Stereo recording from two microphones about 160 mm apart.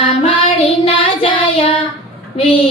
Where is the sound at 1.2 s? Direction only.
35° left (ahead or behind).